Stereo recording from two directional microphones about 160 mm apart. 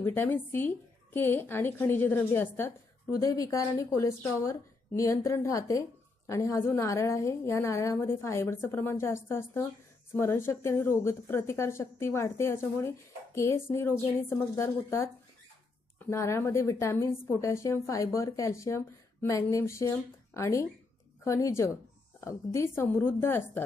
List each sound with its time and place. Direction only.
0.0 s a woman's voice: 15° left (ahead or behind)
16.1 s a woman's voice: 15° left (ahead or behind)